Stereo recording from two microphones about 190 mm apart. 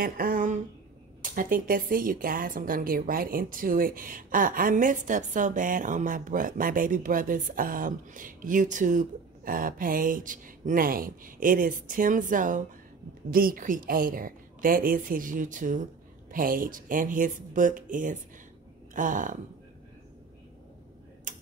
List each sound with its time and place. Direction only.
0.0 s a sound: 50° right (ahead or behind)
1.2 s speech: 45° right (ahead or behind)
21.3 s tick-tock: 45° right (ahead or behind)